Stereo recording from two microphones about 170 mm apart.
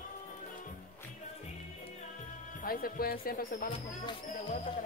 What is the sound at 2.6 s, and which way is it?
Speech, 60° left (ahead or behind).